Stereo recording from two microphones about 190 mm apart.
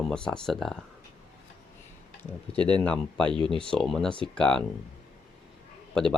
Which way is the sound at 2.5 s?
5° left (ahead or behind).